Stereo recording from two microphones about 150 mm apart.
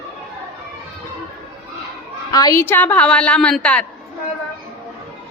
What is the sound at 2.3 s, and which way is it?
A woman's voice, 25° left (ahead or behind).